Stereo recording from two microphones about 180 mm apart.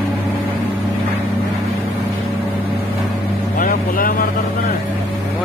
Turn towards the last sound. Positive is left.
turn(degrees=50)  # may be behind; listen again after turning